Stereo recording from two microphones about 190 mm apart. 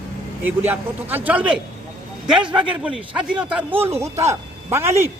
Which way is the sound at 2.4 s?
25° right (ahead or behind).